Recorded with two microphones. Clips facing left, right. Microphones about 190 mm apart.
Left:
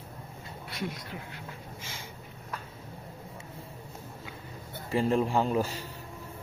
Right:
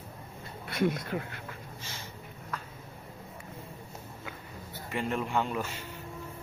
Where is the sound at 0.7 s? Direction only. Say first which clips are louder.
Right 9 dB; 55° right (ahead or behind).